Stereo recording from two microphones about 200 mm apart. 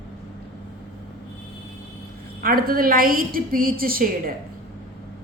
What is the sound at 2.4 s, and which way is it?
A woman's voice, 45° right (ahead or behind).